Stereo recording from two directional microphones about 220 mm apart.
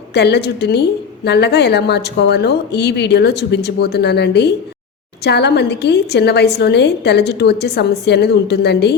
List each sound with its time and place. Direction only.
0.1 s a woman's voice: 50° left (ahead or behind)